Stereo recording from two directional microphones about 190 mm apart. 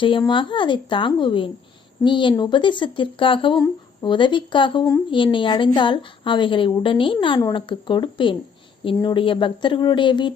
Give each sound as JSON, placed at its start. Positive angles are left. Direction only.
{"t": 0.0, "sound": "speech", "side_deg": 25}